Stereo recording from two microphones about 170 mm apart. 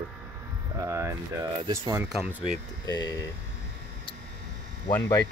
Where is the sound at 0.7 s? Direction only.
15° right (ahead or behind).